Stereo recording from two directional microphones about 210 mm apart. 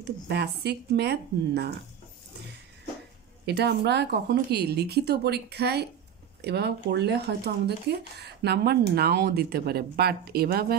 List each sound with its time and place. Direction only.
0.0 s speech: 50° right (ahead or behind)
3.4 s speech: 50° right (ahead or behind)